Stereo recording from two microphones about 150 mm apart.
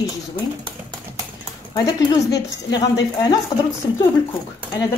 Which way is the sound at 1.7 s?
25° left (ahead or behind).